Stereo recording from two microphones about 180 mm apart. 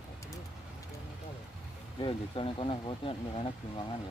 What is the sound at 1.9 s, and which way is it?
Speech, 30° left (ahead or behind).